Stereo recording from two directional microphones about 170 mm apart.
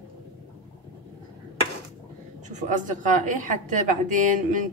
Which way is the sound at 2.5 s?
50° right (ahead or behind).